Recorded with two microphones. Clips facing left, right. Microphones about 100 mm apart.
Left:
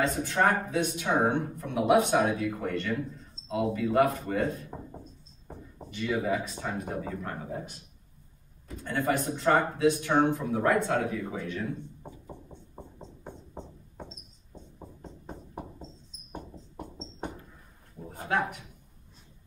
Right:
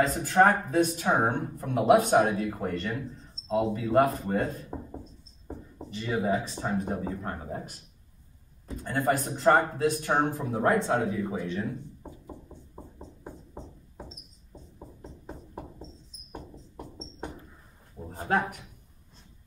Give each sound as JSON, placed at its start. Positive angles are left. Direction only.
{"t": 0.0, "sound": "speech", "side_deg": -40}
{"t": 5.9, "sound": "speech", "side_deg": -35}
{"t": 8.6, "sound": "speech", "side_deg": -40}
{"t": 13.2, "sound": "music", "side_deg": -5}
{"t": 18.1, "sound": "a sound", "side_deg": -35}